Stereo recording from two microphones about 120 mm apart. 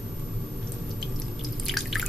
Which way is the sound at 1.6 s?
Centre (ahead or behind).